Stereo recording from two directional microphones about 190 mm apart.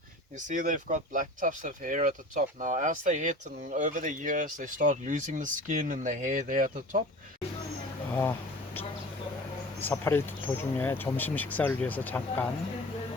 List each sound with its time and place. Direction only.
0.3 s speech: 40° right (ahead or behind)
8.1 s a sound: 10° left (ahead or behind)
9.8 s speech: 10° left (ahead or behind)